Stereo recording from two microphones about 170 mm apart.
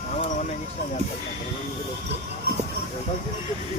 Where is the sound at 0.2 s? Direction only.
50° left (ahead or behind).